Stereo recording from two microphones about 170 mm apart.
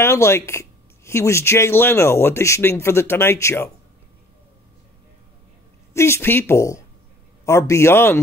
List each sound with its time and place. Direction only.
0.0 s speech: 15° left (ahead or behind)
5.9 s speech: 15° left (ahead or behind)